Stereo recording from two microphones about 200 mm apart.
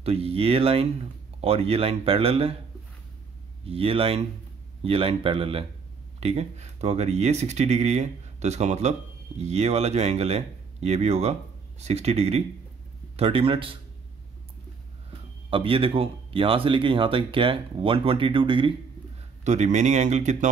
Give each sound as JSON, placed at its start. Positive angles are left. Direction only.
{"t": 0.0, "sound": "speech", "side_deg": -30}
{"t": 3.6, "sound": "speech", "side_deg": -30}
{"t": 15.5, "sound": "speech", "side_deg": -25}
{"t": 19.4, "sound": "speech", "side_deg": -35}